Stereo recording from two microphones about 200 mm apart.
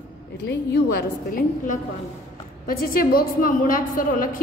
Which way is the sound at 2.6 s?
45° left (ahead or behind).